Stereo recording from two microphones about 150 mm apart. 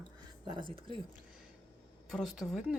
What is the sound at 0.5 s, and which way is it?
Speech, 35° right (ahead or behind).